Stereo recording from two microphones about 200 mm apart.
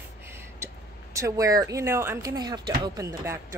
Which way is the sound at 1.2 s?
15° right (ahead or behind).